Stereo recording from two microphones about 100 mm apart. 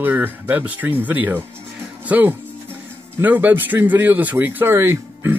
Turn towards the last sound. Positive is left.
turn(degrees=-25)  # may be behind; listen again after turning